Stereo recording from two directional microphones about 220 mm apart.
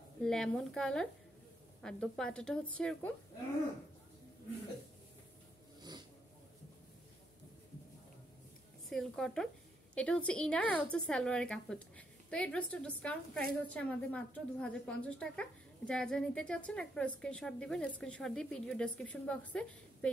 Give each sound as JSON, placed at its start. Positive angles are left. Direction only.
{"t": 0.2, "sound": "a woman's voice", "side_deg": 0}
{"t": 5.8, "sound": "a sound", "side_deg": -20}
{"t": 8.8, "sound": "a woman's voice", "side_deg": 0}